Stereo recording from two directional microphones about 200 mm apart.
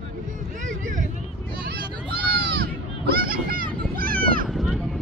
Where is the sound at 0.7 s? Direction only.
40° right (ahead or behind).